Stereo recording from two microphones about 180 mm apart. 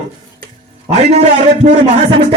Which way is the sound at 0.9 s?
40° right (ahead or behind).